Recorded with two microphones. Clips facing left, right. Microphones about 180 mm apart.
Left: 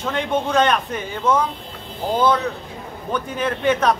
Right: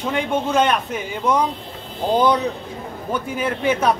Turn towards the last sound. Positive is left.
turn(degrees=-10)  # may be behind; listen again after turning